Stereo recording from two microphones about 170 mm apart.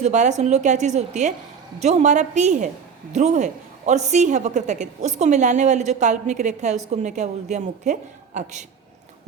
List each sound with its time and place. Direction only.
0.0 s a woman's voice: 45° right (ahead or behind)